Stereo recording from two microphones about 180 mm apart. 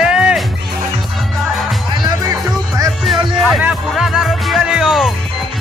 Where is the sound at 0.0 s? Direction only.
5° right (ahead or behind).